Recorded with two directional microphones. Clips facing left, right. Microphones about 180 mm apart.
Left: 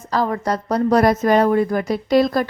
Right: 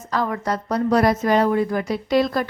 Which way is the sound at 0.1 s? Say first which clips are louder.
Left 3 dB; 35° left (ahead or behind).